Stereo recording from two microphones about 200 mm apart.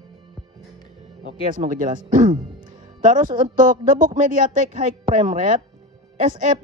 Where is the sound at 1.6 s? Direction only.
40° right (ahead or behind).